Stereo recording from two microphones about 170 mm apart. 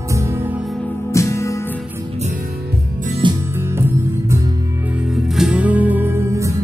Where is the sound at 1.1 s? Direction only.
15° left (ahead or behind).